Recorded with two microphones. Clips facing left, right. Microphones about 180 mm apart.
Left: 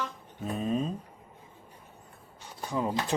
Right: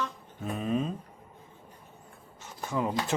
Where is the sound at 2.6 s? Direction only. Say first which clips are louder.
Even; 25° left (ahead or behind).